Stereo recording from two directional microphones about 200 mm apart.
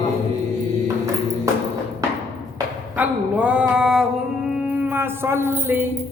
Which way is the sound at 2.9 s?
5° right (ahead or behind).